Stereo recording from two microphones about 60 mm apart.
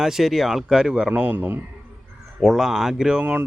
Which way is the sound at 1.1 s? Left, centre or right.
Right.